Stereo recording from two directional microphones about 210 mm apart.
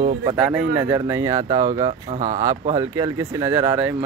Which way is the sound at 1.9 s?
35° right (ahead or behind).